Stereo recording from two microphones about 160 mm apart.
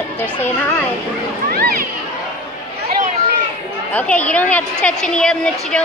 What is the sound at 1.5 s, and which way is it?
Speech, 65° right (ahead or behind).